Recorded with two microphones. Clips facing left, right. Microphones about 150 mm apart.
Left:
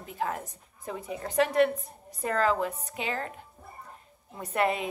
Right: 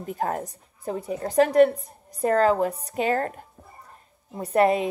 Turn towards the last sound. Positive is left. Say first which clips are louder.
# right 7 dB
turn(degrees=-40)  # may be behind; listen again after turning